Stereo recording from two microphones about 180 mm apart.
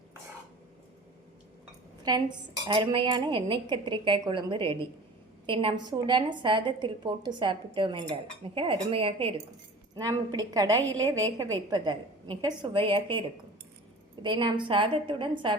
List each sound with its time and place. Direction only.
2.0 s a woman's voice: 25° right (ahead or behind)
9.9 s a woman's voice: 20° right (ahead or behind)